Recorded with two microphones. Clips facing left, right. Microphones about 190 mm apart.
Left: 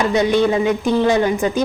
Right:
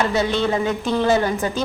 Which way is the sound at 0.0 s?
15° left (ahead or behind).